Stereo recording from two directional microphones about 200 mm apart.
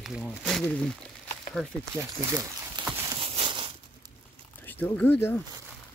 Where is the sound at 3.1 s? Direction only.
25° right (ahead or behind).